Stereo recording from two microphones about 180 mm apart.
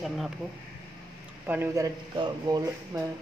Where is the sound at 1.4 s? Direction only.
10° right (ahead or behind).